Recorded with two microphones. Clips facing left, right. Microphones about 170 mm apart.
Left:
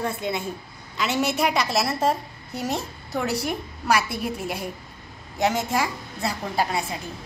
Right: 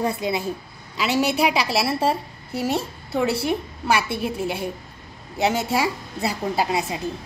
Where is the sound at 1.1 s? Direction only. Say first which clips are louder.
Right 3 dB; 30° right (ahead or behind).